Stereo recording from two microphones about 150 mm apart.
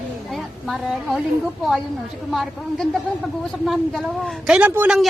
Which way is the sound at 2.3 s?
Centre (ahead or behind).